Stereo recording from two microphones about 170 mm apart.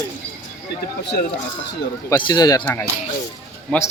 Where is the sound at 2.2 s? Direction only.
25° left (ahead or behind).